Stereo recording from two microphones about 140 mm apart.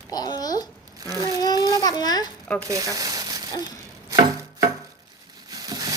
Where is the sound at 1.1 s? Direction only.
25° right (ahead or behind).